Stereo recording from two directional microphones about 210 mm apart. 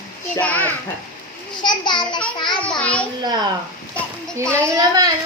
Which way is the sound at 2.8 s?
5° left (ahead or behind).